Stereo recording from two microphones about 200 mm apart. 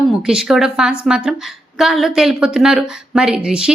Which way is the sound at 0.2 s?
5° right (ahead or behind).